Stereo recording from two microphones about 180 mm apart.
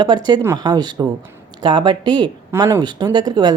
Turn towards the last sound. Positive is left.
turn(degrees=-20)  # may be behind; listen again after turning